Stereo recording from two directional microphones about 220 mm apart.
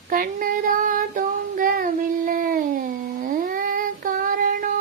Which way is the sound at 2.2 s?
40° right (ahead or behind).